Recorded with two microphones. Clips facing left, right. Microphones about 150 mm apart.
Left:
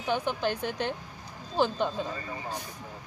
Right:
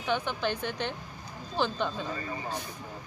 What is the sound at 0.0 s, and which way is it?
Speech, 10° left (ahead or behind).